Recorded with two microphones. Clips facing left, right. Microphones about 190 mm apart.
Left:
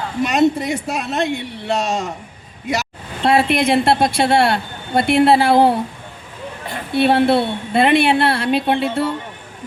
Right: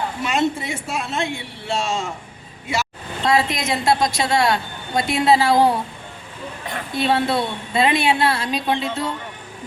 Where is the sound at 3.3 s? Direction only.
60° left (ahead or behind).